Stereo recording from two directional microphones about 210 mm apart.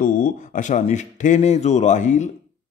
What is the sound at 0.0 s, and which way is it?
Speech, 40° left (ahead or behind).